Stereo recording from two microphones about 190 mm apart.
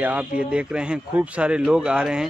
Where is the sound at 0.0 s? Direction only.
10° right (ahead or behind).